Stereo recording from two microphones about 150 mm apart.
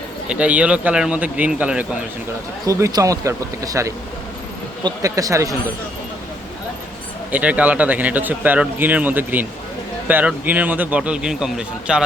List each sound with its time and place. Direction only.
0.3 s speech: 10° right (ahead or behind)
2.6 s speech: 20° right (ahead or behind)
7.3 s speech: 10° right (ahead or behind)